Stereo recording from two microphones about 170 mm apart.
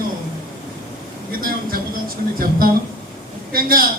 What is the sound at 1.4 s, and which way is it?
Speech, 60° right (ahead or behind).